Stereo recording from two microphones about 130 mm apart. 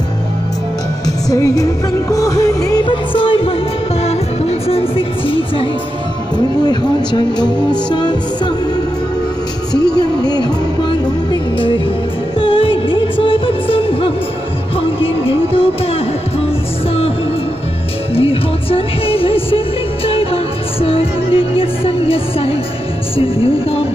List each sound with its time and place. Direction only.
1.0 s music: 30° left (ahead or behind)
2.8 s music: 40° left (ahead or behind)
4.0 s music: 55° left (ahead or behind)
6.3 s speech: 35° left (ahead or behind)
10.3 s music: 35° left (ahead or behind)
12.4 s music: 45° left (ahead or behind)
18.1 s music: 45° left (ahead or behind)
20.8 s music: 45° left (ahead or behind)